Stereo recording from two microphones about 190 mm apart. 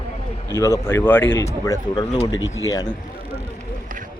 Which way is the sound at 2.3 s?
90° left.